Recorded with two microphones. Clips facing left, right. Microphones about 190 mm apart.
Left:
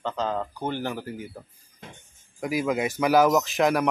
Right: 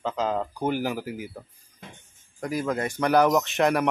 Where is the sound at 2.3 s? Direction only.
5° left (ahead or behind).